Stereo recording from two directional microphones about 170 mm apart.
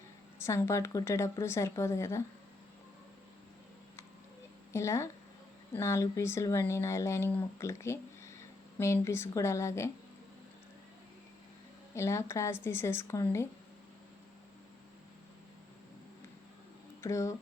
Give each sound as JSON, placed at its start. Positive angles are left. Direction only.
{"t": 0.3, "sound": "speech", "side_deg": 15}
{"t": 4.7, "sound": "a woman's voice", "side_deg": 15}
{"t": 11.9, "sound": "speech", "side_deg": 15}
{"t": 17.0, "sound": "speech", "side_deg": 15}